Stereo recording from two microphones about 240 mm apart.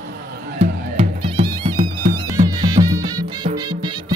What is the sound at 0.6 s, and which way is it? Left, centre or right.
Music, right.